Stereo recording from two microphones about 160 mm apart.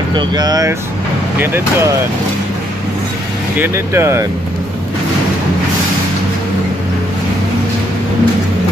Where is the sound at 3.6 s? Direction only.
15° right (ahead or behind).